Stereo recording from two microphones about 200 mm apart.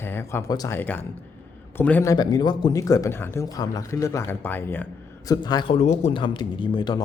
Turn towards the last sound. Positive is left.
turn(degrees=20)  # may be behind; listen again after turning